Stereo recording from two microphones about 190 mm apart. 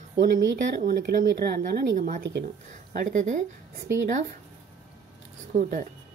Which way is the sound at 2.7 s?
45° right (ahead or behind).